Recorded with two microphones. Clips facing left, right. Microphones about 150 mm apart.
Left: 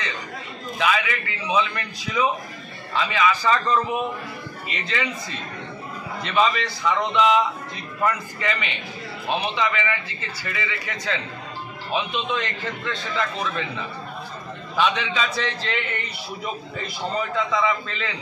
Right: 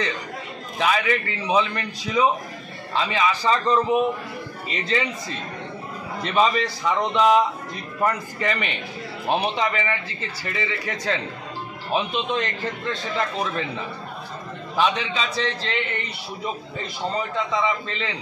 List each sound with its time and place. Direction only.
0.7 s a man's voice: 40° right (ahead or behind)
6.2 s a man's voice: 35° right (ahead or behind)
14.8 s a man's voice: 35° right (ahead or behind)
17.5 s a man's voice: 25° right (ahead or behind)